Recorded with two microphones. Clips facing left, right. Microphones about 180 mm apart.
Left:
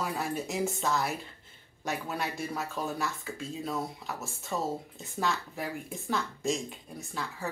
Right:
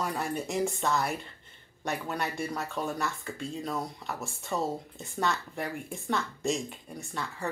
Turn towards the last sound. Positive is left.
turn(degrees=0)  # may be behind; listen again after turning